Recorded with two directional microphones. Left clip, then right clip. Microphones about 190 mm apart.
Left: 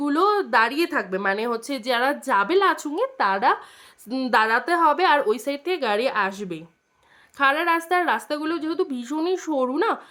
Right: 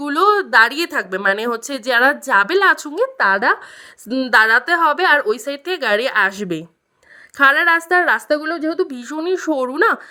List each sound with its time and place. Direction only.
0.0 s a woman's voice: 35° right (ahead or behind)